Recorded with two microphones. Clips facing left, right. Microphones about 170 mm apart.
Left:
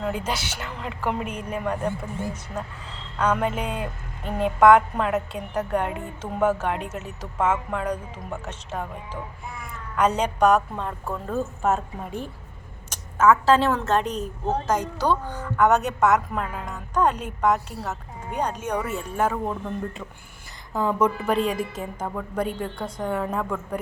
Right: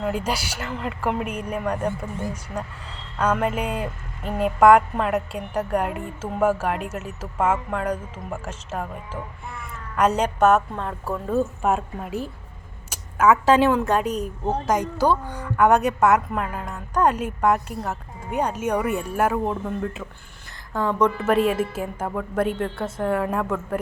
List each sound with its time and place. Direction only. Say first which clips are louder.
0.0 s speech: right 2 dB; 5° right (ahead or behind)
3.2 s a woman's voice: right 1 dB; 5° right (ahead or behind)